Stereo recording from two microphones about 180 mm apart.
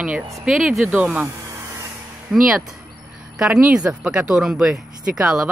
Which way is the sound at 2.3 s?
5° right (ahead or behind).